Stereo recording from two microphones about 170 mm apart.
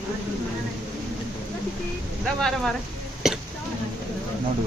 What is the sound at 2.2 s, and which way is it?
Speech, 5° left (ahead or behind).